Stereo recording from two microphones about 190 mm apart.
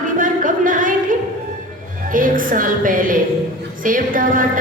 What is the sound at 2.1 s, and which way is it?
A woman's voice, 45° right (ahead or behind).